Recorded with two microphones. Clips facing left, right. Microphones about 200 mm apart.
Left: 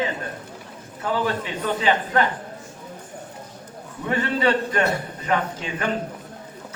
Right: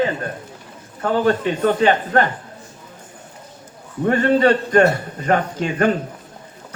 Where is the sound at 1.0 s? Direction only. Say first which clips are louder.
Right 7 dB; 55° right (ahead or behind).